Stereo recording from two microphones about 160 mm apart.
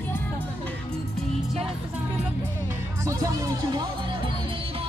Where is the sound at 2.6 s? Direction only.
20° right (ahead or behind).